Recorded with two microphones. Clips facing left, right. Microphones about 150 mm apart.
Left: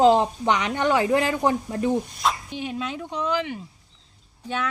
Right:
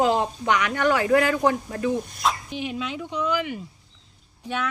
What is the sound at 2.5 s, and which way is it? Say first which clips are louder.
Speech: even; 35° left (ahead or behind).